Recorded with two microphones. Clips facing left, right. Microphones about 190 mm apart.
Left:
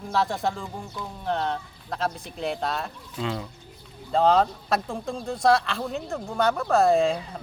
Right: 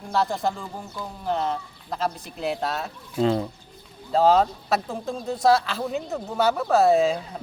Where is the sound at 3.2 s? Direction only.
35° right (ahead or behind).